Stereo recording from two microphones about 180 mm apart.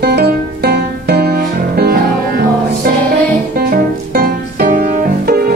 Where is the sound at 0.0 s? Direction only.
60° right (ahead or behind).